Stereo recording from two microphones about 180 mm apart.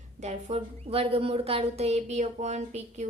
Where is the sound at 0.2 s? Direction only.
40° right (ahead or behind).